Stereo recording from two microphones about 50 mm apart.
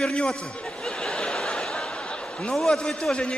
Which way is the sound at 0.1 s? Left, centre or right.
Centre.